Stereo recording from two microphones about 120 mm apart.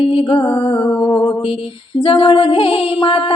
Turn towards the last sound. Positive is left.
turn(degrees=50)  # may be behind; listen again after turning